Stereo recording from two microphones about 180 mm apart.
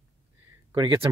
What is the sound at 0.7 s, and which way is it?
Speech, 25° right (ahead or behind).